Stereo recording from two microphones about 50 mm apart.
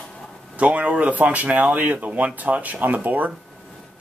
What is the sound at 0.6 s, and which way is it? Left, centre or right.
Speech, right.